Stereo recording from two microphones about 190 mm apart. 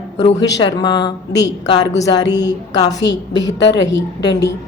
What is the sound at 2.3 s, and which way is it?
Speech, 20° left (ahead or behind).